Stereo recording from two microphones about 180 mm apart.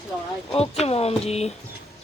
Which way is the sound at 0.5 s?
35° left (ahead or behind).